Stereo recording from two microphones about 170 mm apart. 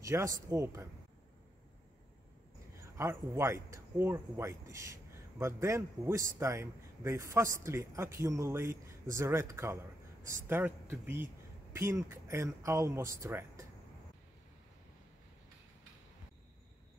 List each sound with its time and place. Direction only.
0.0 s speech: 20° right (ahead or behind)
2.8 s speech: 15° right (ahead or behind)